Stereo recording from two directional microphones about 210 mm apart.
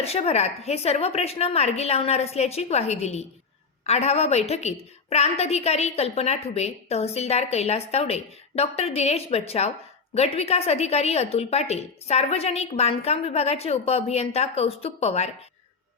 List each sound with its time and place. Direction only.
0.0 s a woman's voice: 30° left (ahead or behind)